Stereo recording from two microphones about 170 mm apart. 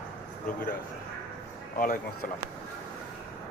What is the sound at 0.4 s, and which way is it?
Speech, 55° left (ahead or behind).